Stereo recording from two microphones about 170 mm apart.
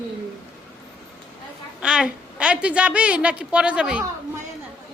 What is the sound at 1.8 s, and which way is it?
Speech, 5° right (ahead or behind).